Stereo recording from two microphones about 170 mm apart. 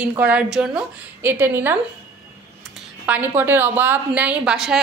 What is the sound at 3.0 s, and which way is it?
A woman's voice, 10° right (ahead or behind).